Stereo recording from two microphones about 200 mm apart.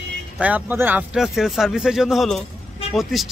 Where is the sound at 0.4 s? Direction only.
5° right (ahead or behind).